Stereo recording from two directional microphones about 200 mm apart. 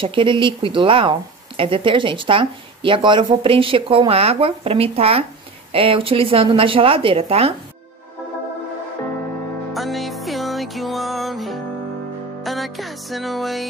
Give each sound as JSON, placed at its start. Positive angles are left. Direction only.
{"t": 0.0, "sound": "speech", "side_deg": -25}
{"t": 9.8, "sound": "music", "side_deg": 0}